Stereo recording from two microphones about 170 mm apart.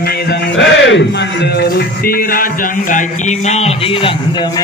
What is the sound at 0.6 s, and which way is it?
Speech, 90° left.